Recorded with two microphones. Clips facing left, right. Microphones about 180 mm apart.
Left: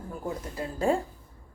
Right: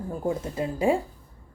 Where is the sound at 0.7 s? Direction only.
10° right (ahead or behind).